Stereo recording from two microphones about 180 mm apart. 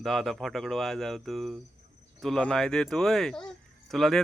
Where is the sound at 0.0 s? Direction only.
Centre (ahead or behind).